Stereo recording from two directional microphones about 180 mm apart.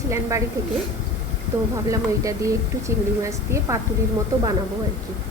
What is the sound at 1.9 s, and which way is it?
Speech, 15° right (ahead or behind).